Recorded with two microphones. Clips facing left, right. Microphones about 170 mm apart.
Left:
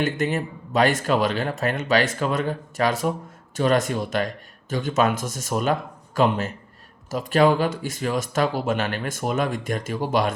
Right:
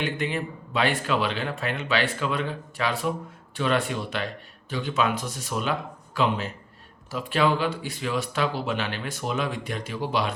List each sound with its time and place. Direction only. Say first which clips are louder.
0.0 s speech: left 4 dB; 45° left (ahead or behind)